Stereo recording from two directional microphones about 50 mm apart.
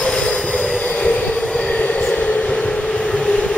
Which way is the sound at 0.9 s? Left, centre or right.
Left.